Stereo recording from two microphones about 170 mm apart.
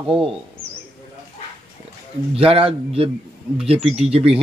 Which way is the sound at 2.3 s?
35° right (ahead or behind).